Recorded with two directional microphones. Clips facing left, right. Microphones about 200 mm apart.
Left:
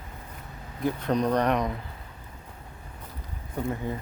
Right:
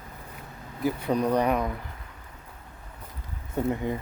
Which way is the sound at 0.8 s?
10° right (ahead or behind).